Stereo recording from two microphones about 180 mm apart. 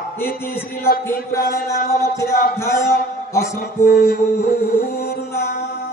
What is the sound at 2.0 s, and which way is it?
Speech, 15° left (ahead or behind).